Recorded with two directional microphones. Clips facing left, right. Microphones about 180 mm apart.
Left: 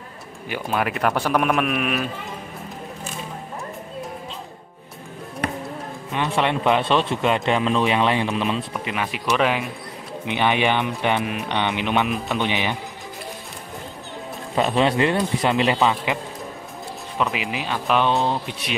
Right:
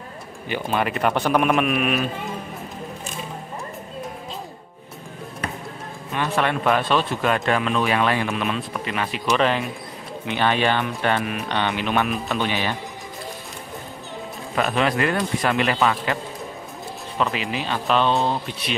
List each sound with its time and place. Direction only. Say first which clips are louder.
0.5 s speech: right 1 dB; 5° left (ahead or behind)
6.1 s speech: left 1 dB; 20° left (ahead or behind)
8.8 s speech: right 3 dB; 10° left (ahead or behind)
14.5 s speech: left 2 dB; 25° left (ahead or behind)
17.2 s speech: even; 10° left (ahead or behind)